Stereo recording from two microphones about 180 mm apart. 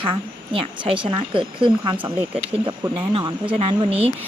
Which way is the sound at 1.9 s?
10° right (ahead or behind).